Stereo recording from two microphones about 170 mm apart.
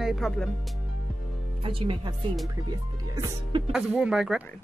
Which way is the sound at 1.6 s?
30° right (ahead or behind).